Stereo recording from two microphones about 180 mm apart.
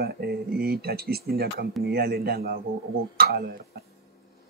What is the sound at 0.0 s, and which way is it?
Speech, 60° right (ahead or behind).